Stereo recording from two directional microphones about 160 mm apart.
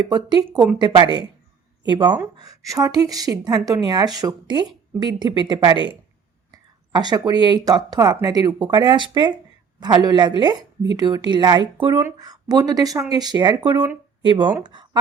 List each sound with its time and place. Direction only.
0.1 s a woman's voice: 25° right (ahead or behind)
6.5 s a sound: 25° right (ahead or behind)
7.4 s a woman's voice: 25° right (ahead or behind)